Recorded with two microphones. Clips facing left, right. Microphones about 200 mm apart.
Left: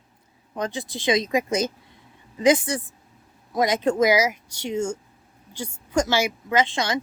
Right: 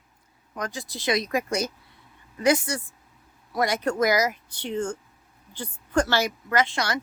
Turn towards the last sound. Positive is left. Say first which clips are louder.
# left 2 dB
turn(degrees=20)  # may be behind; listen again after turning